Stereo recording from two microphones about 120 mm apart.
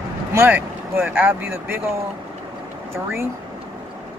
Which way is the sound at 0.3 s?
20° right (ahead or behind).